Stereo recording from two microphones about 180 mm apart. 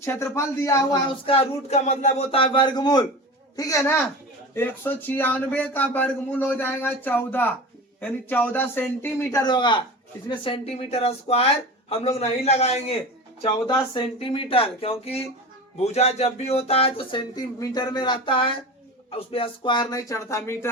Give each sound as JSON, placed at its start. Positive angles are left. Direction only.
{"t": 0.0, "sound": "speech", "side_deg": 15}
{"t": 9.4, "sound": "speech", "side_deg": 25}